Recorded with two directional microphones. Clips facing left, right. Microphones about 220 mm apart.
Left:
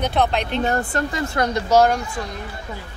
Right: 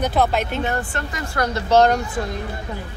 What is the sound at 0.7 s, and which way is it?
Speech, 40° left (ahead or behind).